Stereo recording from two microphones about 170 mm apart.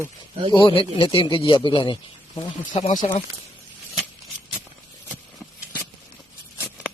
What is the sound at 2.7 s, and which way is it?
Speech, 45° left (ahead or behind).